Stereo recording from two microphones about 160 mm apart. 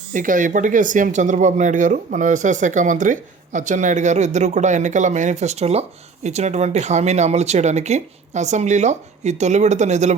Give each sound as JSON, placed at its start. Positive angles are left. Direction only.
{"t": 0.1, "sound": "speech", "side_deg": -55}